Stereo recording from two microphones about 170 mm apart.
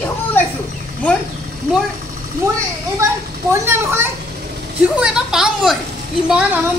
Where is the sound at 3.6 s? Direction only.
15° right (ahead or behind).